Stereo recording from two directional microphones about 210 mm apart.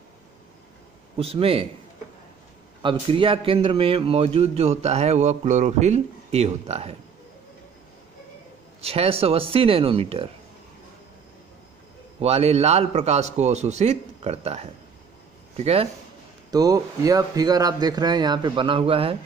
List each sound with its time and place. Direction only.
1.1 s a man's voice: 25° right (ahead or behind)
2.8 s a man's voice: 25° right (ahead or behind)
8.8 s a man's voice: 30° right (ahead or behind)
12.2 s a man's voice: 30° right (ahead or behind)
16.4 s a man's voice: 15° right (ahead or behind)